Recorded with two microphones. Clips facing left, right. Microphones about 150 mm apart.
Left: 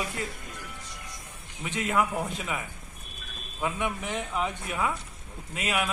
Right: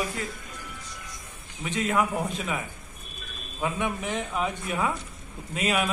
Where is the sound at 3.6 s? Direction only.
20° right (ahead or behind).